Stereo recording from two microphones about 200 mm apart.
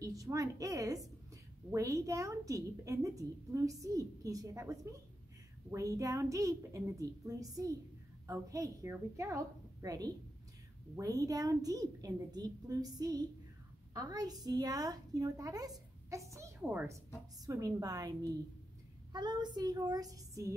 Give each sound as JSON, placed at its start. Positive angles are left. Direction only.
{"t": 0.0, "sound": "a woman's voice", "side_deg": -15}